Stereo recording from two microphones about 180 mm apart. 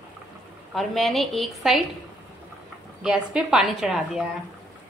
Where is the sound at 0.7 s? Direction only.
Centre (ahead or behind).